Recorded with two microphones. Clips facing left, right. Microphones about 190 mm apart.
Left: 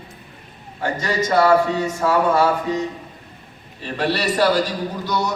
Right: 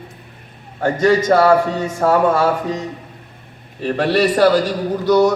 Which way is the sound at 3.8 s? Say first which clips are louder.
Right 6 dB; 50° right (ahead or behind).